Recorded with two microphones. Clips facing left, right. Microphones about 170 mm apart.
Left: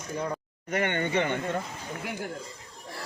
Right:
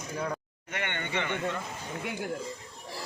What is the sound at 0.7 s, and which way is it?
Speech, 40° left (ahead or behind).